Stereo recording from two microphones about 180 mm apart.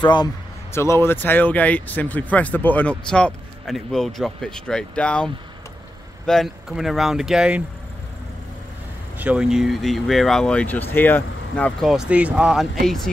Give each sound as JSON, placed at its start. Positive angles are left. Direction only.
{"t": 0.0, "sound": "a man's voice", "side_deg": 25}
{"t": 0.7, "sound": "speech", "side_deg": 15}
{"t": 9.2, "sound": "speech", "side_deg": -5}